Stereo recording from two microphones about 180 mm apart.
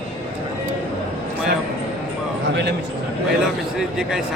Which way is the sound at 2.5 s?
70° right (ahead or behind).